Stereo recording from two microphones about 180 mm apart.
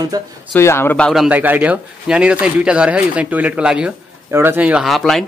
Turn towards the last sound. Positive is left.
turn(degrees=0)  # may be behind; listen again after turning